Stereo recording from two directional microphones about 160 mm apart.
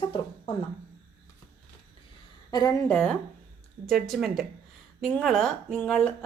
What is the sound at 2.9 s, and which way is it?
Speech, 10° left (ahead or behind).